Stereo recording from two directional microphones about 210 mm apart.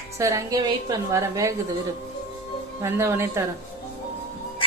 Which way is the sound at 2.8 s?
10° right (ahead or behind).